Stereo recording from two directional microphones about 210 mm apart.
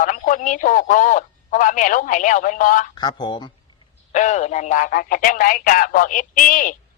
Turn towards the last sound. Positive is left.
turn(degrees=40)  # may be behind; listen again after turning